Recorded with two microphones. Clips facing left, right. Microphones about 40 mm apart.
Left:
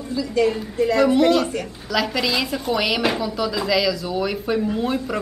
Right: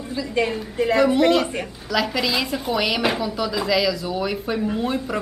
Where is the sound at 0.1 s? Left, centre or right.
Right.